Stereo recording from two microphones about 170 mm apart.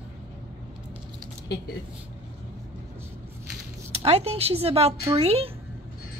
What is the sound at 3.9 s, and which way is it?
Speech, 35° right (ahead or behind).